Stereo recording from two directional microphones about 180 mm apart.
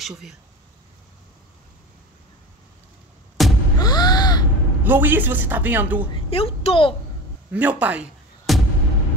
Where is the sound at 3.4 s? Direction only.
Centre (ahead or behind).